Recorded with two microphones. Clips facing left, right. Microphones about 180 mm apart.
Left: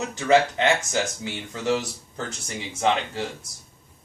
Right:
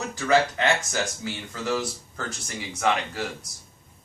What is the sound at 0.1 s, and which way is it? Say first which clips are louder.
Speech: left 2 dB; 20° left (ahead or behind).